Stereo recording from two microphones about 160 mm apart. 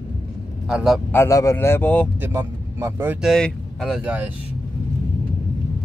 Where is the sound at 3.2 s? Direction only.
Centre (ahead or behind).